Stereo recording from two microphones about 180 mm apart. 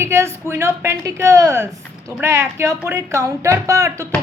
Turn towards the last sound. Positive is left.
turn(degrees=-15)  # may be behind; listen again after turning